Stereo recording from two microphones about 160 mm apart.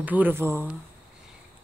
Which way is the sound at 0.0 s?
10° right (ahead or behind).